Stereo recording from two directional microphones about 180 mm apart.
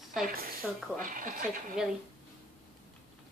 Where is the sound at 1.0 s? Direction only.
50° right (ahead or behind).